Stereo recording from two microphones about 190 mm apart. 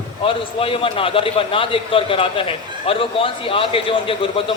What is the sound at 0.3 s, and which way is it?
A man's voice, 30° left (ahead or behind).